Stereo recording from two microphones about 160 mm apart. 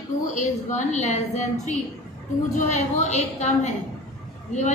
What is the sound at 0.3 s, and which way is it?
A woman's voice, 50° left (ahead or behind).